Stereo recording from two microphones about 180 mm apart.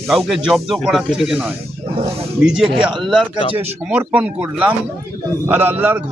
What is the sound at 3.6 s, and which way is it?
Speech, 10° right (ahead or behind).